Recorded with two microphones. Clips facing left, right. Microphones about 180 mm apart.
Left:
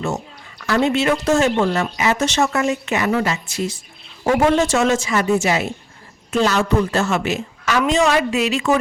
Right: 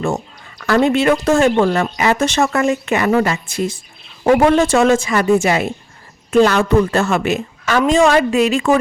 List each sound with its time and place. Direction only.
0.6 s a woman's voice: 55° right (ahead or behind)